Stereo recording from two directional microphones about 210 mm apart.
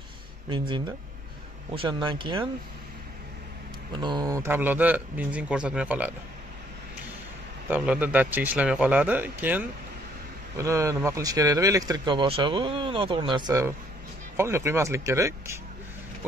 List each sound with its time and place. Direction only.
0.5 s speech: 20° right (ahead or behind)
4.0 s speech: 20° right (ahead or behind)
7.7 s speech: 5° right (ahead or behind)